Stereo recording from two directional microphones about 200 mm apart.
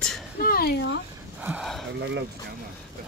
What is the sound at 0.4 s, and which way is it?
Speech, 50° left (ahead or behind).